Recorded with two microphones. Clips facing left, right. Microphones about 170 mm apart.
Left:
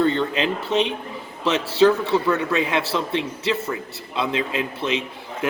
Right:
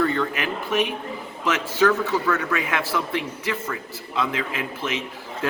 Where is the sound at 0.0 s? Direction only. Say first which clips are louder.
Left 3 dB; 25° left (ahead or behind).